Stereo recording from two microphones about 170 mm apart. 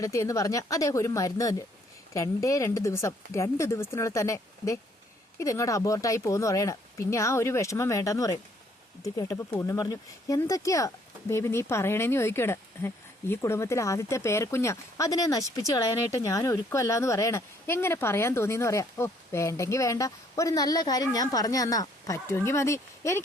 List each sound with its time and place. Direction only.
0.0 s speech: 20° left (ahead or behind)